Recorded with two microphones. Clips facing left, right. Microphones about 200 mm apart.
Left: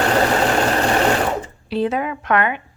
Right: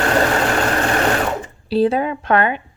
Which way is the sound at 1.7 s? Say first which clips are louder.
Right 4 dB; 35° right (ahead or behind).